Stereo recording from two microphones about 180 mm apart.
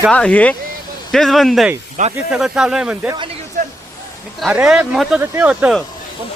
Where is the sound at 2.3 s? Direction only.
5° right (ahead or behind).